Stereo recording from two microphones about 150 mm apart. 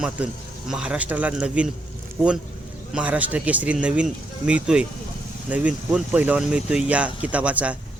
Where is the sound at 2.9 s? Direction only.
10° right (ahead or behind).